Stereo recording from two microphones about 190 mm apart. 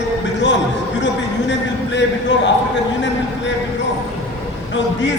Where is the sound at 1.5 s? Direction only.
70° left (ahead or behind).